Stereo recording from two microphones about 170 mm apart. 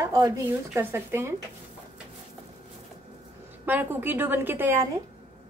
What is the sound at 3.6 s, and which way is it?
A woman's voice, 10° right (ahead or behind).